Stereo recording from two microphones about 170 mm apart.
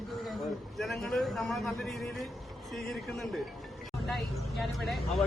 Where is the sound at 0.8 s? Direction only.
Centre (ahead or behind).